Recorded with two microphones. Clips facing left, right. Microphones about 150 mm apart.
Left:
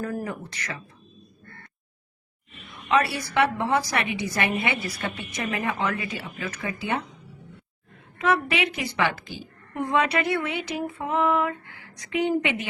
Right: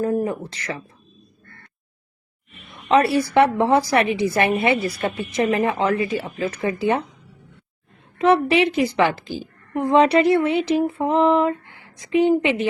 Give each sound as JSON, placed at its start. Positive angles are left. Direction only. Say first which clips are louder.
{"t": 0.0, "sound": "speech", "louder": "right 9 dB", "side_deg": -25}
{"t": 2.9, "sound": "a woman's voice", "louder": "right 7 dB", "side_deg": -30}
{"t": 8.3, "sound": "a woman's voice", "louder": "right 7 dB", "side_deg": -30}
{"t": 9.9, "sound": "a sound", "louder": "right 9 dB", "side_deg": -30}